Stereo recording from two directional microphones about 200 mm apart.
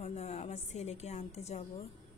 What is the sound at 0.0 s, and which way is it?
Music, 35° left (ahead or behind).